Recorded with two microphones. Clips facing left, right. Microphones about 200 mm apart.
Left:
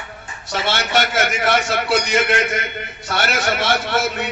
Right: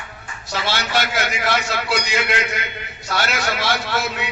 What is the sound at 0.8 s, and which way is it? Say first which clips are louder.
A man's voice: left 4 dB; 55° left (ahead or behind).